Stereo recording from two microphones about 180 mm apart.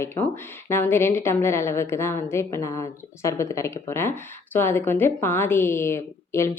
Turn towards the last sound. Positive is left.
turn(degrees=15)  # may be behind; listen again after turning